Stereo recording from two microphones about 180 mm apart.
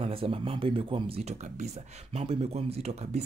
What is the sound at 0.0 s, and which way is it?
Speech, 30° right (ahead or behind).